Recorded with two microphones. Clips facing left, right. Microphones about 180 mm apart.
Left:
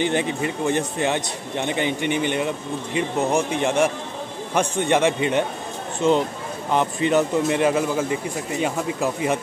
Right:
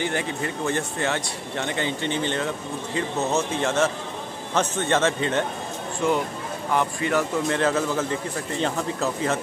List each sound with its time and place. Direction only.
0.0 s speech: 20° left (ahead or behind)